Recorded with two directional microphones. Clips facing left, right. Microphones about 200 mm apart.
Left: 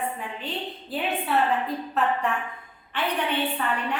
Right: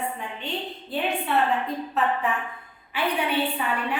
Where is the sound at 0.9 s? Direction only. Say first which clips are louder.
Right 1 dB; centre (ahead or behind).